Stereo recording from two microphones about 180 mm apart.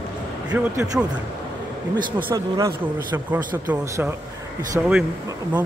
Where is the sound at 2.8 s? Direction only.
10° right (ahead or behind).